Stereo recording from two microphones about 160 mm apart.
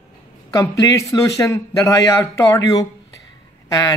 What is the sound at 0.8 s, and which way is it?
Speech, 20° left (ahead or behind).